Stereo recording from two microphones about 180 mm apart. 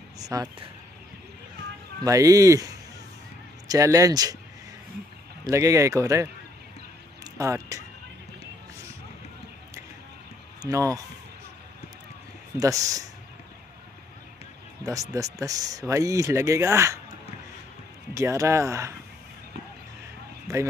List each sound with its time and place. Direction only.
0.2 s speech: 20° right (ahead or behind)
2.0 s speech: 20° right (ahead or behind)
5.4 s speech: 15° right (ahead or behind)
7.3 s speech: 15° right (ahead or behind)
10.6 s speech: 20° right (ahead or behind)
12.5 s speech: 20° right (ahead or behind)
14.8 s speech: 20° right (ahead or behind)
18.1 s speech: 15° right (ahead or behind)
20.5 s speech: 15° right (ahead or behind)